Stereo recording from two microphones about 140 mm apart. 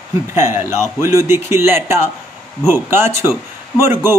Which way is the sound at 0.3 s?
20° right (ahead or behind).